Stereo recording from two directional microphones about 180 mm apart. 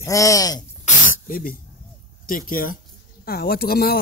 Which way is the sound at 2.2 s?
50° left (ahead or behind).